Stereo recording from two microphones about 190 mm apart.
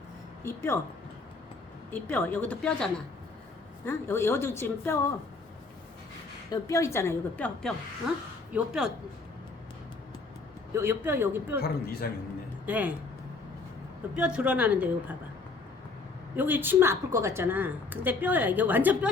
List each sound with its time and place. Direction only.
0.4 s speech: 15° left (ahead or behind)
1.9 s speech: 10° left (ahead or behind)
6.5 s speech: 15° left (ahead or behind)
8.5 s speech: 5° right (ahead or behind)
10.8 s a woman's voice: 10° right (ahead or behind)
11.6 s a man's voice: 55° left (ahead or behind)
12.6 s speech: 10° right (ahead or behind)
14.1 s a woman's voice: 5° right (ahead or behind)
16.3 s a woman's voice: 10° right (ahead or behind)